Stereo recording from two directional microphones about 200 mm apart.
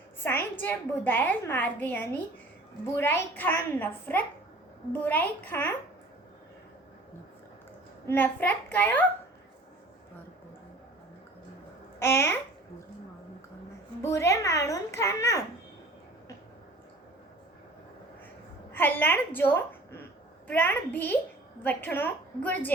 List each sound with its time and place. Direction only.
0.5 s a woman's voice: 10° left (ahead or behind)
8.0 s a woman's voice: 10° left (ahead or behind)
11.9 s a child's voice: 10° left (ahead or behind)
14.0 s a woman's voice: 15° left (ahead or behind)
18.7 s a woman's voice: 10° left (ahead or behind)